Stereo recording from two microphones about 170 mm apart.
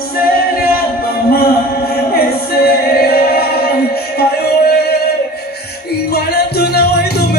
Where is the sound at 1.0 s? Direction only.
65° left (ahead or behind).